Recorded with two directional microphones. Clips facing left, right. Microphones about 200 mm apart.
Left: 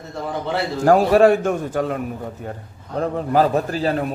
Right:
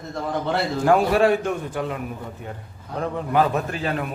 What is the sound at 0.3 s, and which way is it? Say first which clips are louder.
Speech: even; centre (ahead or behind).